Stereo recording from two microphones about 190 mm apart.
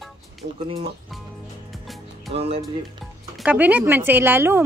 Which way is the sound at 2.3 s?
30° right (ahead or behind).